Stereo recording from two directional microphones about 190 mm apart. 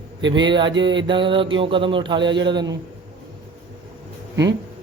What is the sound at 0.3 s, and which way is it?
A man's voice, 25° right (ahead or behind).